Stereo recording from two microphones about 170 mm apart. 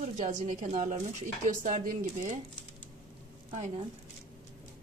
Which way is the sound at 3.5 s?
45° right (ahead or behind).